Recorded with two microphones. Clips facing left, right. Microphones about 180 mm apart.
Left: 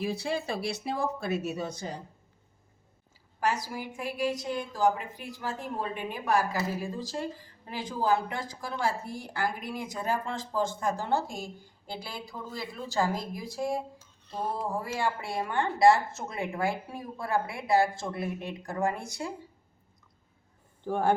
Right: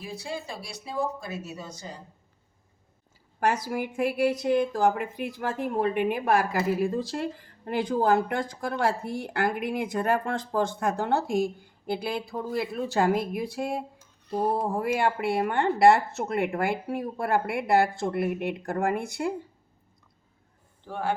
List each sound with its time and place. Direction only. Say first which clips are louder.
0.1 s speech: left 4 dB; 65° left (ahead or behind)
3.4 s a woman's voice: right 4 dB; 55° right (ahead or behind)
14.3 s a sound: right 7 dB; 15° right (ahead or behind)
14.9 s a woman's voice: right 6 dB; 60° right (ahead or behind)
20.9 s speech: left 3 dB; 45° left (ahead or behind)